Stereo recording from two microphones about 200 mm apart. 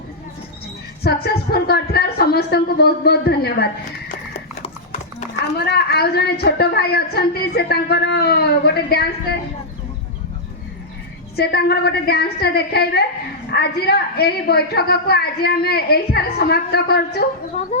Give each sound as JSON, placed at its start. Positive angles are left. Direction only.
{"t": 1.0, "sound": "a woman's voice", "side_deg": 50}
{"t": 4.1, "sound": "horse", "side_deg": 35}
{"t": 5.5, "sound": "a woman's voice", "side_deg": 55}
{"t": 11.3, "sound": "a woman's voice", "side_deg": 55}